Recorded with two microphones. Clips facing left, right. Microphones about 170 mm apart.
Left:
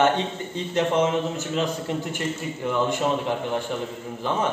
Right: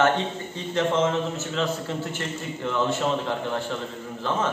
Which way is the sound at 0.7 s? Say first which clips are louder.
Left 1 dB; 15° left (ahead or behind).